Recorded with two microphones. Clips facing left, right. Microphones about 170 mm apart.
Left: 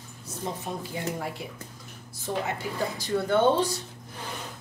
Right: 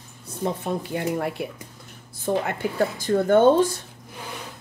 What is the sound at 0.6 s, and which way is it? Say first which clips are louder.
Speech: right 6 dB; 65° right (ahead or behind).